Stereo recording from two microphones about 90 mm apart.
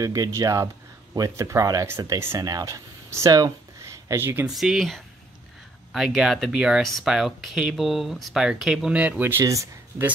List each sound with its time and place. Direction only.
0.0 s speech: 40° right (ahead or behind)
3.3 s speech: 45° right (ahead or behind)
3.8 s a sound: 35° right (ahead or behind)
4.5 s speech: 5° right (ahead or behind)
6.8 s speech: 5° left (ahead or behind); by 9.4 s 20° right (ahead or behind)
9.4 s speech: 35° right (ahead or behind)